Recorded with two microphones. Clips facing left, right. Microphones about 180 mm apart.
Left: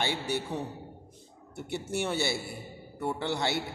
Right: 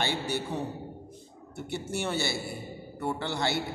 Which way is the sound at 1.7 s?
15° left (ahead or behind).